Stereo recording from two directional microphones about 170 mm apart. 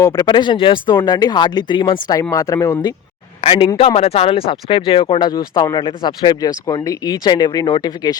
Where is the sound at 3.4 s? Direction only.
35° left (ahead or behind).